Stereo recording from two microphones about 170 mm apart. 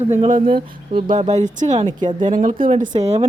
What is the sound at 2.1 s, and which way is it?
Speech, 50° right (ahead or behind).